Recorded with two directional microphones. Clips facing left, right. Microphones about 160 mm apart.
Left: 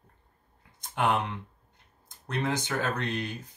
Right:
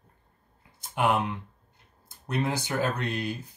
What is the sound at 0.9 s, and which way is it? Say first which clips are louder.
Speech: right 2 dB; 10° right (ahead or behind).